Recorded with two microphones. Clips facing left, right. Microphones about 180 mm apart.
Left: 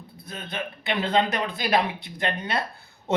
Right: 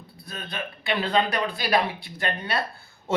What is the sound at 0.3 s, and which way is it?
A man's voice, 20° left (ahead or behind).